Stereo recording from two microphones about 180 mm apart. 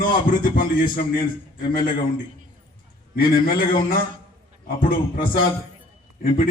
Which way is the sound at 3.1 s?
55° left (ahead or behind).